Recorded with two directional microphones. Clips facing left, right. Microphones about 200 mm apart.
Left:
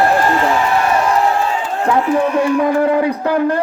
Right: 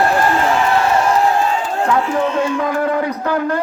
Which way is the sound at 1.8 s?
20° left (ahead or behind).